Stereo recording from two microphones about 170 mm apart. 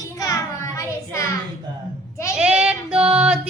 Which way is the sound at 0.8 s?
15° left (ahead or behind).